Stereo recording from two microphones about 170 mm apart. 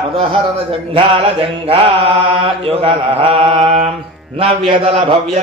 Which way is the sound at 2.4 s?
35° right (ahead or behind).